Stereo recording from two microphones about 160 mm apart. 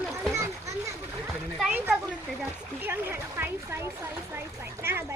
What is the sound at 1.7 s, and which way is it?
Speech, 10° right (ahead or behind).